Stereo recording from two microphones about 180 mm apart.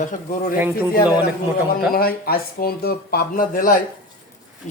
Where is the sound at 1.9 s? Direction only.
55° left (ahead or behind).